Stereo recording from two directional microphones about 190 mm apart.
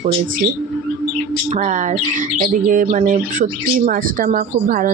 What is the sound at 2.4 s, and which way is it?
Speech, 45° right (ahead or behind).